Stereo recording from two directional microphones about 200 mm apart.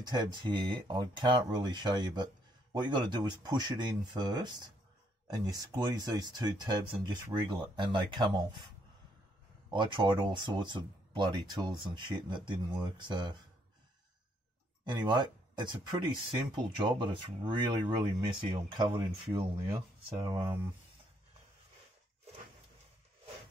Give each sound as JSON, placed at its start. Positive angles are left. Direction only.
{"t": 0.0, "sound": "speech", "side_deg": -20}
{"t": 9.7, "sound": "speech", "side_deg": -25}
{"t": 14.9, "sound": "speech", "side_deg": -20}